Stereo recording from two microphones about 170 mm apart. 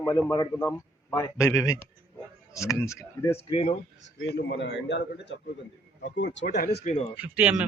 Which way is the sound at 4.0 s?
85° left.